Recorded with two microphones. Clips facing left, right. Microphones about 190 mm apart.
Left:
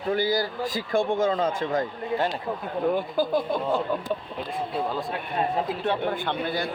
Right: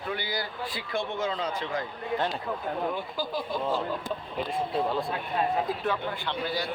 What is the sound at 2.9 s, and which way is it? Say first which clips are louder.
Speech: left 8 dB; 55° left (ahead or behind).